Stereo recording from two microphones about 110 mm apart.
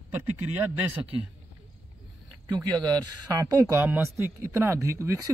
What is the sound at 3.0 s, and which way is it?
Speech, 35° right (ahead or behind).